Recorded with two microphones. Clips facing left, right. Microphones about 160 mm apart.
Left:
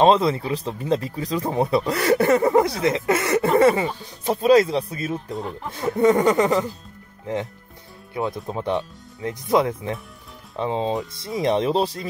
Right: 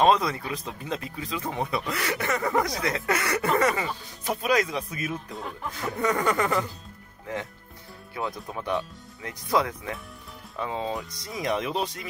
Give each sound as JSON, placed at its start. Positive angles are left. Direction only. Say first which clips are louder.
{"t": 0.0, "sound": "speech", "louder": "left 5 dB", "side_deg": 25}
{"t": 8.1, "sound": "speech", "louder": "left 6 dB", "side_deg": 20}